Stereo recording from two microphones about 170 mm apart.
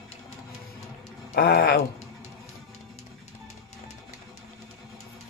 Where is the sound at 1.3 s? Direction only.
65° left (ahead or behind).